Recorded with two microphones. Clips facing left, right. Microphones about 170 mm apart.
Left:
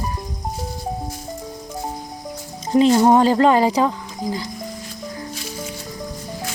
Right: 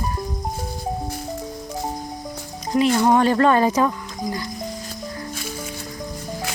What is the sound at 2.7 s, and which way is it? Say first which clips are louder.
Speech: left 4 dB; 30° left (ahead or behind).